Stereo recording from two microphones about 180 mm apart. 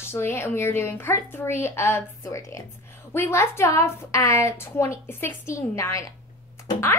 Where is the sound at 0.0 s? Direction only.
15° left (ahead or behind).